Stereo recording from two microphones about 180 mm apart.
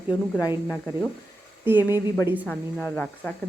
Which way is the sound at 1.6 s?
10° right (ahead or behind).